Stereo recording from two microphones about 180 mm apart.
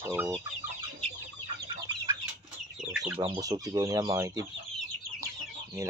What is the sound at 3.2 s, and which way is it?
Speech, 25° right (ahead or behind).